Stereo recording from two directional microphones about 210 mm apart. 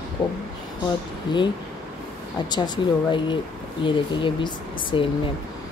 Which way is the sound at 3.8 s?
25° left (ahead or behind).